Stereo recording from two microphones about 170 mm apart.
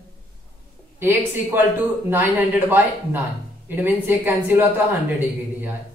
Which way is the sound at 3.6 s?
10° right (ahead or behind).